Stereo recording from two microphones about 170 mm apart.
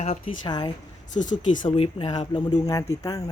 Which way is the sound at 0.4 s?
25° left (ahead or behind).